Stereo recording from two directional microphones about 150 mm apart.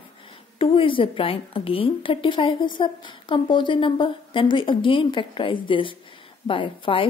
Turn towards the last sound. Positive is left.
turn(degrees=35)  # may be behind; listen again after turning